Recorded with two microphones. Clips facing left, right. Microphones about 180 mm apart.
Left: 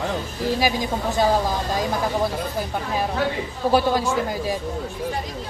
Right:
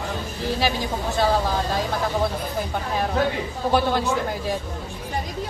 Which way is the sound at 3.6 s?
5° left (ahead or behind).